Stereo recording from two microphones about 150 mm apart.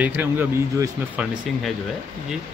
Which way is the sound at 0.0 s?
15° right (ahead or behind).